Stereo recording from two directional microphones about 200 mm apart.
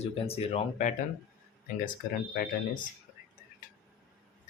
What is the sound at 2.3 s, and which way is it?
Speech, 45° left (ahead or behind).